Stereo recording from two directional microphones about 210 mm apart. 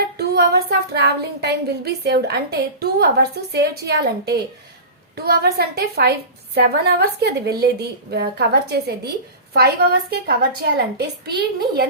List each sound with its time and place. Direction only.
0.2 s a woman's voice: 50° right (ahead or behind)